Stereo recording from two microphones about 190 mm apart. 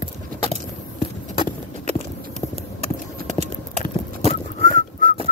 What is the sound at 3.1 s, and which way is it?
Clip-clop, 40° right (ahead or behind).